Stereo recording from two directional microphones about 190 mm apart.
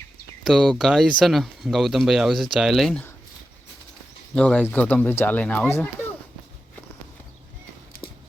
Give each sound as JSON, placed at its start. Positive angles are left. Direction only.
{"t": 0.4, "sound": "speech", "side_deg": 0}
{"t": 4.4, "sound": "speech", "side_deg": 5}